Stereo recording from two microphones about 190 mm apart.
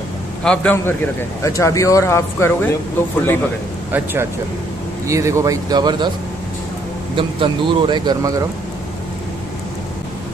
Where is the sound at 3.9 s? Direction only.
10° right (ahead or behind).